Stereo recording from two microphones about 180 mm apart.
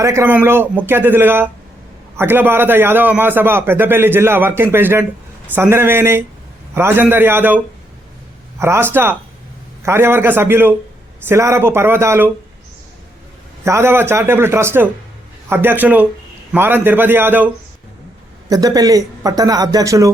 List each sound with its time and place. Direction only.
0.0 s a man's voice: 15° right (ahead or behind)
13.7 s a man's voice: 15° right (ahead or behind)